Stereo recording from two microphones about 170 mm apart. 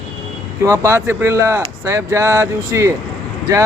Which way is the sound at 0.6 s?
15° right (ahead or behind).